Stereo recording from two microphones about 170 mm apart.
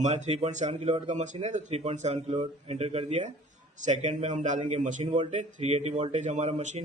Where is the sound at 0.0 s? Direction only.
45° right (ahead or behind).